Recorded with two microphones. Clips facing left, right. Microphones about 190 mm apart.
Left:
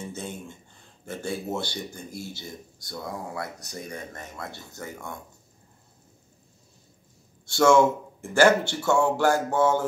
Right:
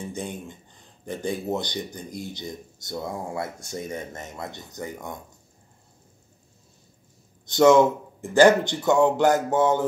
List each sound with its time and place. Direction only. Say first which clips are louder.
0.0 s a sound: right 3 dB; 15° right (ahead or behind)
1.0 s speech: right 3 dB; 15° right (ahead or behind)
7.4 s speech: right 3 dB; 20° right (ahead or behind)